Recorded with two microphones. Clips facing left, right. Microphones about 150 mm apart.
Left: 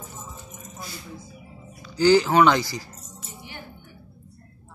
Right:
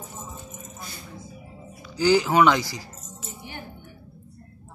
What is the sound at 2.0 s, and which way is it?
Speech, 5° right (ahead or behind).